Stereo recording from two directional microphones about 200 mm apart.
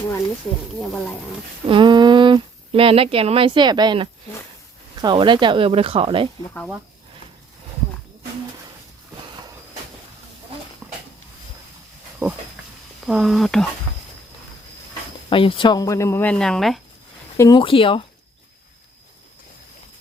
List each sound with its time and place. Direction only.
0.8 s speech: 5° left (ahead or behind)
1.6 s speech: 25° right (ahead or behind)
12.2 s speech: 10° right (ahead or behind)
15.3 s speech: 25° left (ahead or behind); by 16.8 s centre (ahead or behind)
17.3 s speech: 15° left (ahead or behind)
17.6 s speech: 25° left (ahead or behind)